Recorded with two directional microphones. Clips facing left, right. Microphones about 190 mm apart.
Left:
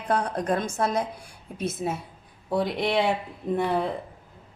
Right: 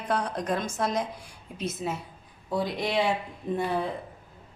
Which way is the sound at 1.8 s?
45° left (ahead or behind).